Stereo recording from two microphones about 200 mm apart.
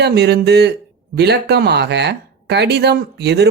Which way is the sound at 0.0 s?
55° right (ahead or behind).